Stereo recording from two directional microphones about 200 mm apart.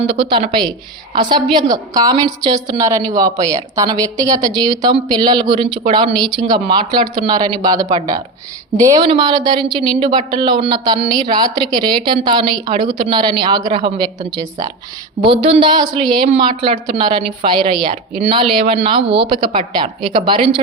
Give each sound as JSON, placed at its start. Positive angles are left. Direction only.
{"t": 0.1, "sound": "a woman's voice", "side_deg": -25}